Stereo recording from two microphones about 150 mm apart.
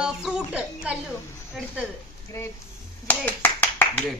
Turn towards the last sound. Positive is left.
turn(degrees=10)  # may be behind; listen again after turning